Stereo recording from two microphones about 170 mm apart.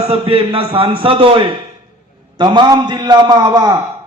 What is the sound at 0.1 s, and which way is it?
A man's voice, 30° right (ahead or behind).